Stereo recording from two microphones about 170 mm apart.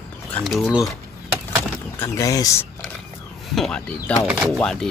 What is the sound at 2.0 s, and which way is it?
Speech, 20° left (ahead or behind).